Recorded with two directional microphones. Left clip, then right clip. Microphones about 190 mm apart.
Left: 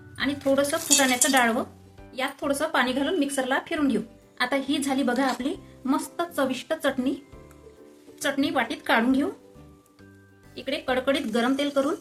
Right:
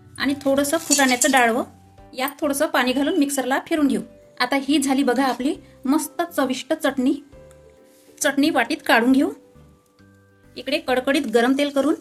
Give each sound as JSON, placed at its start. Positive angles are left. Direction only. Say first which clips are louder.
{"t": 0.2, "sound": "speech", "louder": "right 3 dB", "side_deg": -50}
{"t": 8.2, "sound": "speech", "louder": "right 6 dB", "side_deg": -50}
{"t": 10.5, "sound": "speech", "louder": "right 5 dB", "side_deg": -50}